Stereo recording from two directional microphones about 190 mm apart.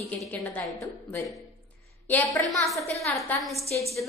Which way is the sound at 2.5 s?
Centre (ahead or behind).